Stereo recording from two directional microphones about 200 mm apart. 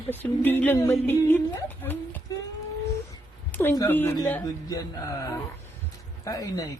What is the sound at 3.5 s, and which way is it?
A woman's voice, 10° left (ahead or behind).